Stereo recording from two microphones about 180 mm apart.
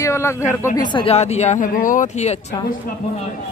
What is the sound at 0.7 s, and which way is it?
Speech, 25° left (ahead or behind).